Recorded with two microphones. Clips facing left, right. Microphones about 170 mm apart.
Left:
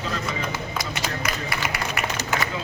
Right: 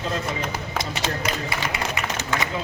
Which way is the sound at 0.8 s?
25° right (ahead or behind).